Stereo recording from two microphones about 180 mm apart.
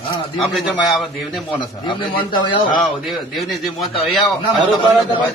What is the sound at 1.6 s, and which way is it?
Speech, 25° left (ahead or behind).